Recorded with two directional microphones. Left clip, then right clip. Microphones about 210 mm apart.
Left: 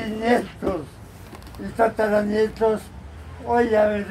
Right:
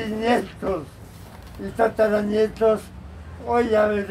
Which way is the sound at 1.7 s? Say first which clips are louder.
Right 1 dB; 5° left (ahead or behind).